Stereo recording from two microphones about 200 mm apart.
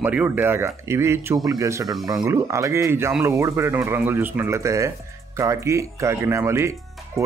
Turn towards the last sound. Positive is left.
turn(degrees=-15)  # may be behind; listen again after turning